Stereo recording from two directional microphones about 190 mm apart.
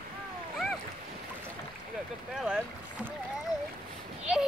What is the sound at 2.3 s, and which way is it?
Boat, 5° right (ahead or behind).